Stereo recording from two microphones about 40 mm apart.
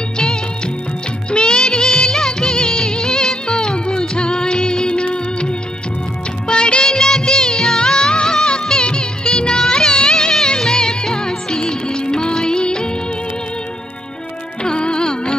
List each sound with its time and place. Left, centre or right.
1.3 s music of bollywood: left
14.6 s music: left